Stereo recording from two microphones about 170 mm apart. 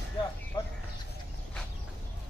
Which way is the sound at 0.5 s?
25° left (ahead or behind).